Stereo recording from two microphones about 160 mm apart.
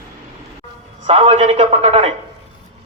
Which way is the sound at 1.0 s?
35° right (ahead or behind).